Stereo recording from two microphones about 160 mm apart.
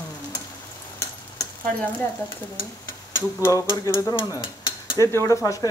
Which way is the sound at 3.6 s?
20° left (ahead or behind).